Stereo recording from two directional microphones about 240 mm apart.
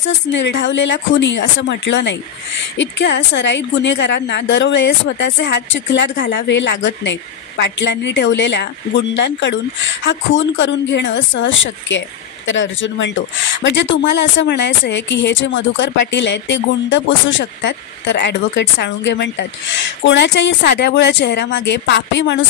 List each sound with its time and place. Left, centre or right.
0.0 s a woman's voice: left